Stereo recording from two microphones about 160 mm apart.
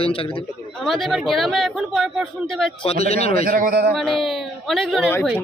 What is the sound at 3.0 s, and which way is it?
Speech, 40° left (ahead or behind).